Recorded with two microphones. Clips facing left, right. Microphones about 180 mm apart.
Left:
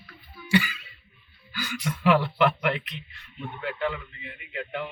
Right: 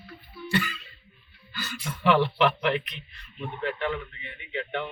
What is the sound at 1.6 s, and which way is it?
Speech, 10° left (ahead or behind).